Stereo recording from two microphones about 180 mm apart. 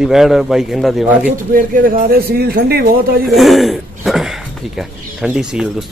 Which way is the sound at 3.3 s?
Centre (ahead or behind).